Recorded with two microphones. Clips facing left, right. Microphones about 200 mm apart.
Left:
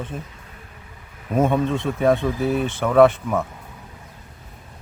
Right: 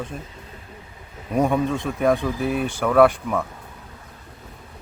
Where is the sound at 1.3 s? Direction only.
Centre (ahead or behind).